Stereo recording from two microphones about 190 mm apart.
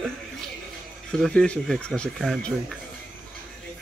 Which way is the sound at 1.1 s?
5° left (ahead or behind).